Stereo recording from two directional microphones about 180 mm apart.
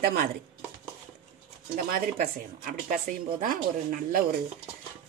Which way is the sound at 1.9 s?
55° right (ahead or behind).